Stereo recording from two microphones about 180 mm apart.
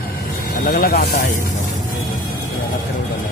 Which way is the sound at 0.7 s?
55° left (ahead or behind).